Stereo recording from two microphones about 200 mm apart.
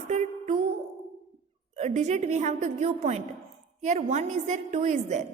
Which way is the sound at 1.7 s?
35° right (ahead or behind).